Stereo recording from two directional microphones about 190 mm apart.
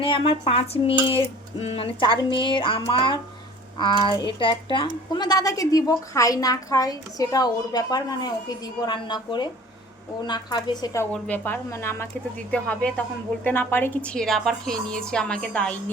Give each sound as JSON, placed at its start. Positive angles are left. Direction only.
{"t": 0.0, "sound": "a woman's voice", "side_deg": 30}